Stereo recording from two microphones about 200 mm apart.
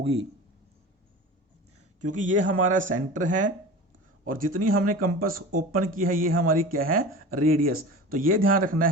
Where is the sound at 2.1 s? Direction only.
40° right (ahead or behind).